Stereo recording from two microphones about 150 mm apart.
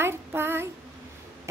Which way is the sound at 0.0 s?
15° right (ahead or behind).